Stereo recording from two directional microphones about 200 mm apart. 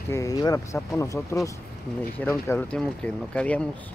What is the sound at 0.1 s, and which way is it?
Speech, 15° left (ahead or behind).